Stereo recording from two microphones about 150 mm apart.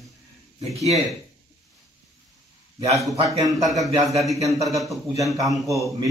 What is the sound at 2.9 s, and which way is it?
Speech, centre (ahead or behind).